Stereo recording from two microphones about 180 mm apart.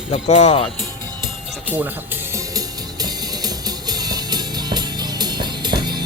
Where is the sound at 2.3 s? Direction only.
20° right (ahead or behind).